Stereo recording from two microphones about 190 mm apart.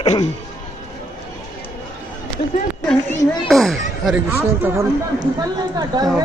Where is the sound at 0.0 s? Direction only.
25° left (ahead or behind).